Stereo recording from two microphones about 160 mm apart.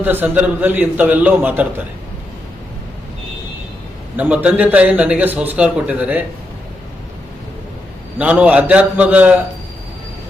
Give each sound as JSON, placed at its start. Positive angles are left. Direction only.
{"t": 0.0, "sound": "a man's voice", "side_deg": -10}
{"t": 4.2, "sound": "a man's voice", "side_deg": -10}
{"t": 8.2, "sound": "a man's voice", "side_deg": -10}